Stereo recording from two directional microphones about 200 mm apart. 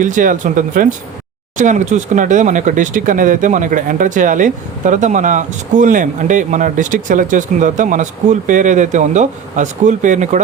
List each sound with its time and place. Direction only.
0.0 s speech: 40° right (ahead or behind)